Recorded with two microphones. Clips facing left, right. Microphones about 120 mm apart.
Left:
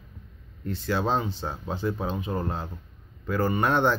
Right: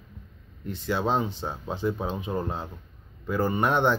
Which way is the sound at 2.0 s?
15° right (ahead or behind).